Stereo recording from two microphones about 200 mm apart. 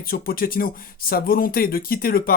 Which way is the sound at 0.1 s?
45° left (ahead or behind).